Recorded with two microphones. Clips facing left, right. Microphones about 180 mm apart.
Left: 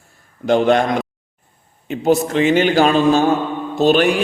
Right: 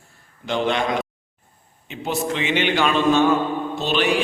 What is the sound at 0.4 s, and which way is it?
Speech, 45° left (ahead or behind).